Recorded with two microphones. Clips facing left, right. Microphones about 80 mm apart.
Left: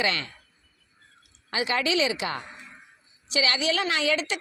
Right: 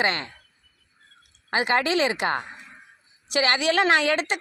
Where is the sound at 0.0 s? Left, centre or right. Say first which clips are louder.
Right 2 dB; right.